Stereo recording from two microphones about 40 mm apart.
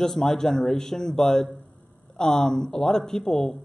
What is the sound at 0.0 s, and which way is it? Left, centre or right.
Speech, centre.